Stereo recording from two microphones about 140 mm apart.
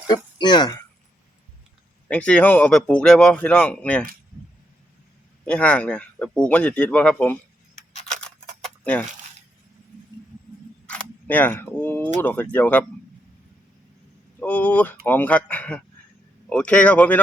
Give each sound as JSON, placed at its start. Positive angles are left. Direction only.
{"t": 0.1, "sound": "speech", "side_deg": 30}
{"t": 2.0, "sound": "a man's voice", "side_deg": 10}
{"t": 5.5, "sound": "a man's voice", "side_deg": 10}
{"t": 8.6, "sound": "a sound", "side_deg": 10}
{"t": 10.8, "sound": "single-lens reflex camera", "side_deg": 10}
{"t": 12.2, "sound": "a man's voice", "side_deg": 10}
{"t": 14.3, "sound": "a man's voice", "side_deg": 10}